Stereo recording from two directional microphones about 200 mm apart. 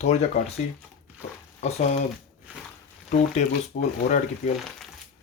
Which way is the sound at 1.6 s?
35° left (ahead or behind).